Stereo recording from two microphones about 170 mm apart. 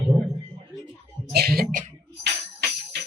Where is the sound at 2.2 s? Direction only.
90° right.